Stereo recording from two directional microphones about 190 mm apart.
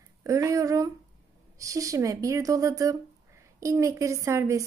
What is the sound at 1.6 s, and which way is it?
A woman's voice, 15° right (ahead or behind).